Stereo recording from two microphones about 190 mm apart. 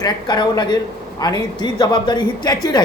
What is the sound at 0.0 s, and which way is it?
Speech, 20° left (ahead or behind).